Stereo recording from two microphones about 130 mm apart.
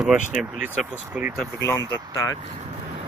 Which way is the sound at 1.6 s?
25° left (ahead or behind).